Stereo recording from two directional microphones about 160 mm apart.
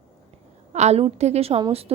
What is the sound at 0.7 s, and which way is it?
Speech, 45° right (ahead or behind).